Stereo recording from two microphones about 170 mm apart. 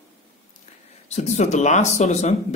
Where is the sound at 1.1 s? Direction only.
40° left (ahead or behind).